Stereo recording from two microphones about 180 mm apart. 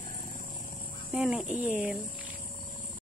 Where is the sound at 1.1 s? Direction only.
5° right (ahead or behind).